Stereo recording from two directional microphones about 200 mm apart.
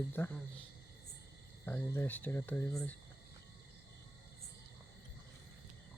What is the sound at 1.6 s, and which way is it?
Speech, 10° left (ahead or behind).